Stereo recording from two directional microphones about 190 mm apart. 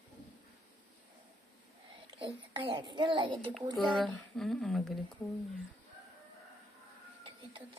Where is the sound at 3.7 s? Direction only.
Centre (ahead or behind).